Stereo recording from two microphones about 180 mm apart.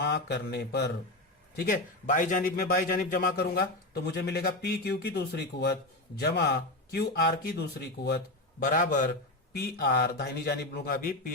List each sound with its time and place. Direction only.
0.0 s speech: 70° left (ahead or behind)
1.5 s a man's voice: 50° left (ahead or behind)
9.5 s a man's voice: 60° left (ahead or behind)